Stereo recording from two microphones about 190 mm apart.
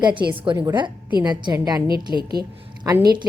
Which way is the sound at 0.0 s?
25° right (ahead or behind).